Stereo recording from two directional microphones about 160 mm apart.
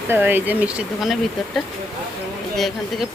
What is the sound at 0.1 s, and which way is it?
Speech, 15° right (ahead or behind).